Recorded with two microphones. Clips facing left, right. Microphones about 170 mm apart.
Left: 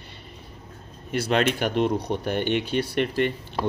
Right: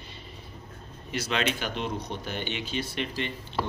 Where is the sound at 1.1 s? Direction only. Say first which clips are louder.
Left 6 dB; 50° left (ahead or behind).